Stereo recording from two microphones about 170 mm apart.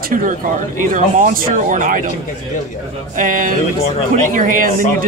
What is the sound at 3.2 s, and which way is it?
Speech, 50° right (ahead or behind).